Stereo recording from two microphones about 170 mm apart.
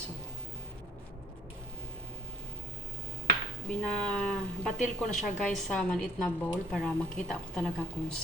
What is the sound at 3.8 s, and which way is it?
A woman's voice, 5° left (ahead or behind).